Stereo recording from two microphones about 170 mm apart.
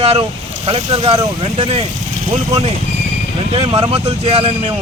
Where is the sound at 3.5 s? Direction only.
35° right (ahead or behind).